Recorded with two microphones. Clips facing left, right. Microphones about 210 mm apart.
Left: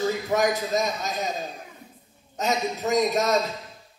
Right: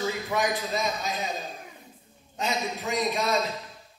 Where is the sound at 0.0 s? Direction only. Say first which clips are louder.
Left 5 dB; 40° left (ahead or behind).